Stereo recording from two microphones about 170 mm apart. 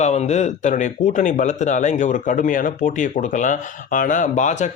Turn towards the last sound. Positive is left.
turn(degrees=45)  # may be behind; listen again after turning